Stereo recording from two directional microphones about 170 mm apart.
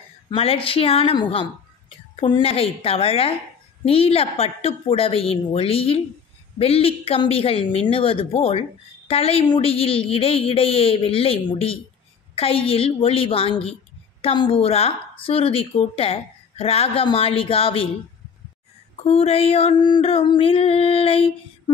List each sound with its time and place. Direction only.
0.3 s a woman's voice: 35° left (ahead or behind)
19.0 s a woman's voice: 35° left (ahead or behind)